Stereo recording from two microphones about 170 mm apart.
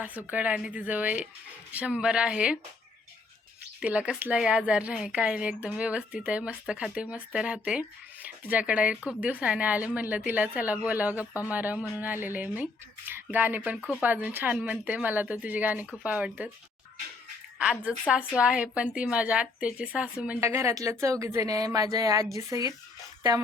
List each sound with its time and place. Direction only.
0.0 s a woman's voice: 10° right (ahead or behind)
3.8 s a woman's voice: 5° right (ahead or behind)
17.6 s a woman's voice: 5° right (ahead or behind)